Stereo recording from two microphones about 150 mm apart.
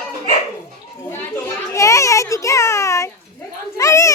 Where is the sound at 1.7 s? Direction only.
20° left (ahead or behind).